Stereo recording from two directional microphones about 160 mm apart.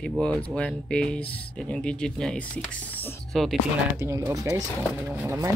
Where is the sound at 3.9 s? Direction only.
20° right (ahead or behind).